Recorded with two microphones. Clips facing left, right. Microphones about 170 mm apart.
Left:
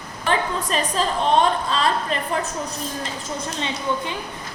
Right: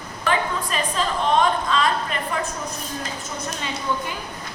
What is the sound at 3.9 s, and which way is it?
Speech, 25° left (ahead or behind).